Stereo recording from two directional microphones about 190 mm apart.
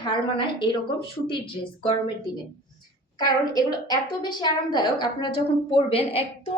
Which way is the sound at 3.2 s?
20° left (ahead or behind).